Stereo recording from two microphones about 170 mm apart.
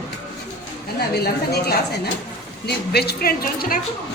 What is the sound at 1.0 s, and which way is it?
A woman's voice, 70° left (ahead or behind).